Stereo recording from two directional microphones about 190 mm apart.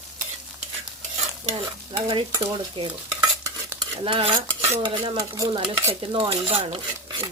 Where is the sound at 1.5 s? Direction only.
30° right (ahead or behind).